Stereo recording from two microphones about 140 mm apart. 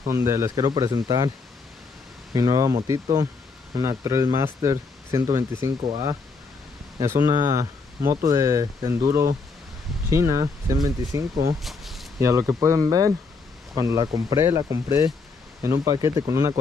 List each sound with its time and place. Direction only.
0.1 s speech: 20° right (ahead or behind)
2.3 s speech: 25° right (ahead or behind)
11.6 s a sound: centre (ahead or behind)
12.2 s speech: 20° right (ahead or behind)